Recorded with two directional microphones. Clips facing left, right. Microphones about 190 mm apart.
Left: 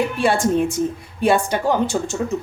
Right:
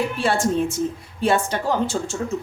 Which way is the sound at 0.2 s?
15° left (ahead or behind).